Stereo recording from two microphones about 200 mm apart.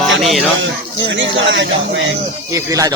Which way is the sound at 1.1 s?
65° right (ahead or behind).